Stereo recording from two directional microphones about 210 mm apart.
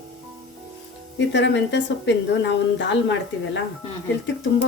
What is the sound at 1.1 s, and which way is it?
A woman's voice, 60° left (ahead or behind).